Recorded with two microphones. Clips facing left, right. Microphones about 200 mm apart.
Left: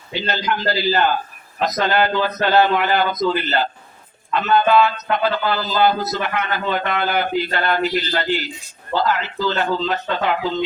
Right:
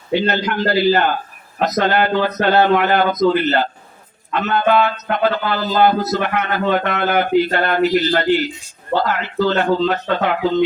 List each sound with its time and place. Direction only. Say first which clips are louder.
0.1 s a man's voice: right 5 dB; 55° right (ahead or behind)